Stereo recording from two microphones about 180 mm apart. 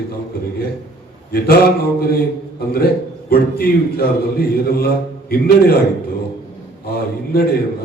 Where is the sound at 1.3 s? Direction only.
60° left (ahead or behind).